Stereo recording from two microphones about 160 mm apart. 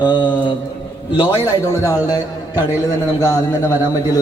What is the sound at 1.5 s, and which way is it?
Speech, 20° left (ahead or behind).